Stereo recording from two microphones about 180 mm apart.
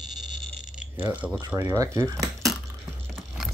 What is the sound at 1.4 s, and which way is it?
Speech, 20° right (ahead or behind).